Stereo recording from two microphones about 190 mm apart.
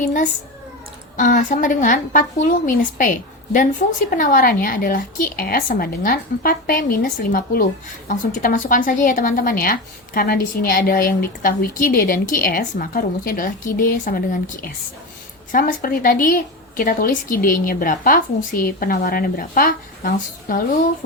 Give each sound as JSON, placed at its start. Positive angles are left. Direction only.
{"t": 1.1, "sound": "speech", "side_deg": 40}